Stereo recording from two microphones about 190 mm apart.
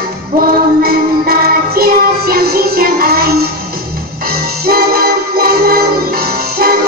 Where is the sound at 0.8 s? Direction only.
55° right (ahead or behind).